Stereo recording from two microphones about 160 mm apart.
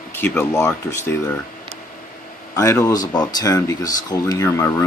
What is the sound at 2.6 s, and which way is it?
Speech, 20° left (ahead or behind).